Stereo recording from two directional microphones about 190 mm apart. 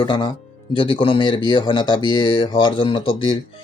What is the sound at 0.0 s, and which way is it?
Speech, 25° left (ahead or behind).